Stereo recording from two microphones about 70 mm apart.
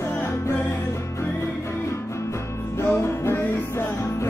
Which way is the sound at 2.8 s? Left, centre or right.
Left.